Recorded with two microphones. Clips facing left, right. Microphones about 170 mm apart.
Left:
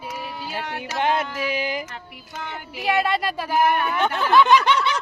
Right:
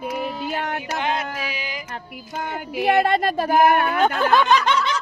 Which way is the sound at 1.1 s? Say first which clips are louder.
Left 3 dB; 55° left (ahead or behind).